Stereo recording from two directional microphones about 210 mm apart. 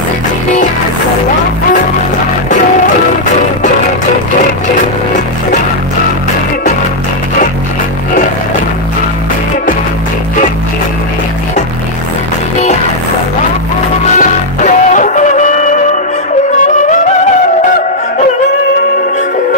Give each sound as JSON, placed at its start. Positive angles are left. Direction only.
{"t": 14.1, "sound": "music", "side_deg": 35}